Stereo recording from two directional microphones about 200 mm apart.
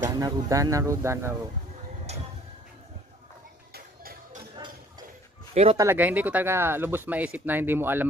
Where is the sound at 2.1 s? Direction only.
35° right (ahead or behind).